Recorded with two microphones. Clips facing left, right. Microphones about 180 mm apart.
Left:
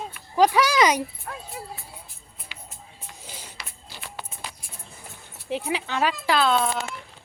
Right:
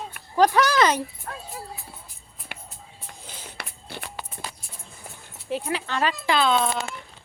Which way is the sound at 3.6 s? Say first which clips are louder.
Right 5 dB; 60° right (ahead or behind).